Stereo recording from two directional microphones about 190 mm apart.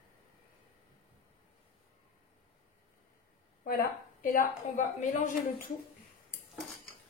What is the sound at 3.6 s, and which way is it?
A woman's voice, 50° left (ahead or behind).